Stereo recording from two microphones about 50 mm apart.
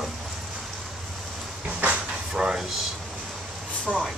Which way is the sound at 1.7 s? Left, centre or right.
Right.